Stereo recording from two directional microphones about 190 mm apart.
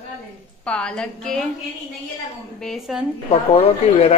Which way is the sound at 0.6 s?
5° left (ahead or behind).